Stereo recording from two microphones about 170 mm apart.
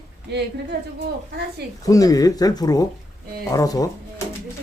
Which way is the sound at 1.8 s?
20° left (ahead or behind).